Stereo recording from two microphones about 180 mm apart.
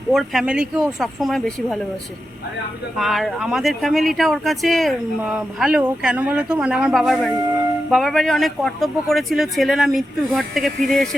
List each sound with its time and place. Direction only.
0.1 s speech: centre (ahead or behind)
3.0 s speech: centre (ahead or behind)